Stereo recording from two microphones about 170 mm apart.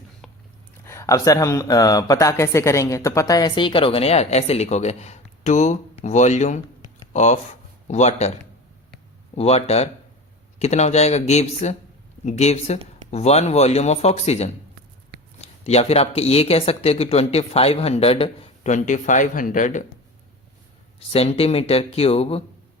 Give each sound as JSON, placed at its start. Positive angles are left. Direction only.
{"t": 0.9, "sound": "speech", "side_deg": 20}
{"t": 9.3, "sound": "speech", "side_deg": 35}
{"t": 21.1, "sound": "speech", "side_deg": 35}